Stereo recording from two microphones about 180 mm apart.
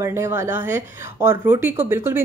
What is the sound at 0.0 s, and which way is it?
A woman's voice, 15° right (ahead or behind).